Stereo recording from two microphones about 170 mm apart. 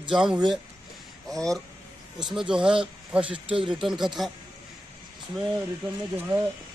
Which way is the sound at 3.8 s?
Centre (ahead or behind).